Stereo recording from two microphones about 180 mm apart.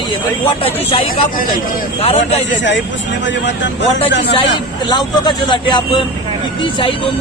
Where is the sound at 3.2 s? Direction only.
90° left.